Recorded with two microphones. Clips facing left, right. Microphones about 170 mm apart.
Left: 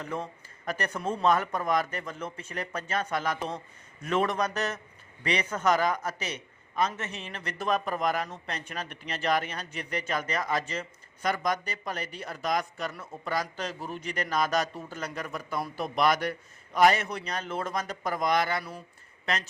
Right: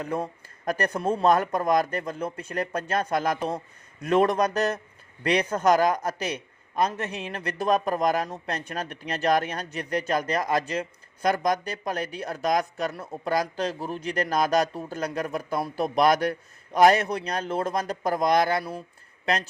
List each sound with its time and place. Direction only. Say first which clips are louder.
0.1 s speech: right 5 dB; 40° right (ahead or behind)